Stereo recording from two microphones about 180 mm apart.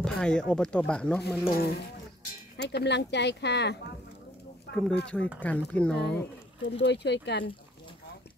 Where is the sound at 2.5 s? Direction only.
65° left (ahead or behind).